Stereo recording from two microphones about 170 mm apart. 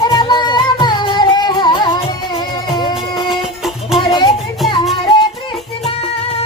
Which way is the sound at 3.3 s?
Centre (ahead or behind).